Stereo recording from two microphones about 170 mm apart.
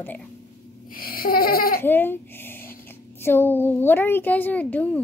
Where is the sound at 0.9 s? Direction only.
60° left (ahead or behind).